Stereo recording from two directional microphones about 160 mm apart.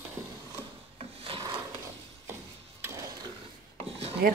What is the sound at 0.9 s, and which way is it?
Filing, 35° right (ahead or behind).